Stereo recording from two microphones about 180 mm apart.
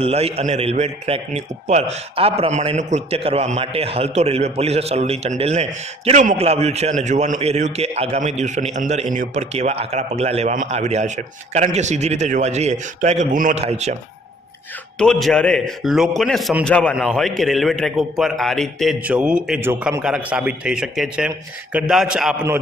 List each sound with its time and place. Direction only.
0.0 s a man's voice: 35° right (ahead or behind)
15.0 s a man's voice: centre (ahead or behind)